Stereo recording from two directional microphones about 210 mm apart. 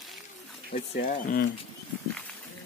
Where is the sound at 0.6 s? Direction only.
45° left (ahead or behind).